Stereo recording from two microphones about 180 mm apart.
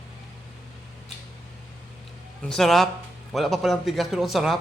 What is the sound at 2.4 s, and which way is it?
A man's voice, 5° left (ahead or behind).